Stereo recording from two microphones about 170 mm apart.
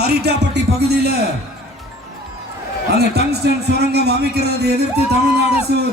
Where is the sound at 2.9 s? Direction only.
70° right (ahead or behind).